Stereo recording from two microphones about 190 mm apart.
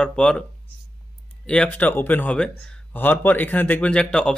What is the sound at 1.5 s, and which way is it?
Speech, 5° left (ahead or behind).